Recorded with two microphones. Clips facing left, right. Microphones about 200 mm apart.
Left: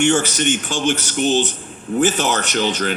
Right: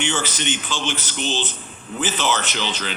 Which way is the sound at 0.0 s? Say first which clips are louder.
Left 8 dB; 45° left (ahead or behind).